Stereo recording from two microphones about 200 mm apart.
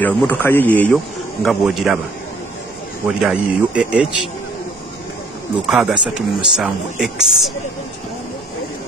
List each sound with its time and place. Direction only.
0.0 s a man's voice: 10° left (ahead or behind)
3.2 s speech: 5° right (ahead or behind)
5.7 s speech: centre (ahead or behind)